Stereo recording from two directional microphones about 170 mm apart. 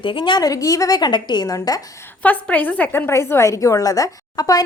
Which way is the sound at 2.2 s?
10° left (ahead or behind).